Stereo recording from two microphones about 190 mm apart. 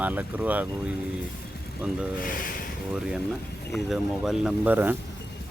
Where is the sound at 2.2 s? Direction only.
45° left (ahead or behind).